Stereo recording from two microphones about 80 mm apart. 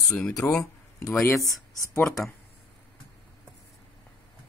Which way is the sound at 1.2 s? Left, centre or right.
Left.